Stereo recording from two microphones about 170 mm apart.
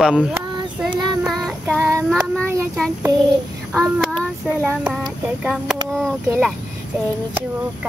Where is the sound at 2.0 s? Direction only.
5° left (ahead or behind).